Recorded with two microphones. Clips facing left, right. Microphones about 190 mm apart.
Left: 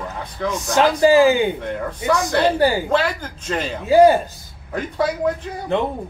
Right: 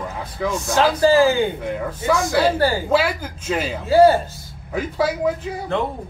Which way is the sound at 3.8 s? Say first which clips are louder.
Left 1 dB; 15° left (ahead or behind).